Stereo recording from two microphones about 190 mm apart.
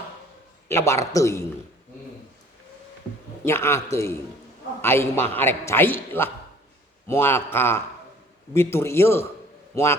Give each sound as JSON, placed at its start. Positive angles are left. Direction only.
{"t": 0.7, "sound": "a man's voice", "side_deg": 15}
{"t": 3.4, "sound": "a man's voice", "side_deg": 15}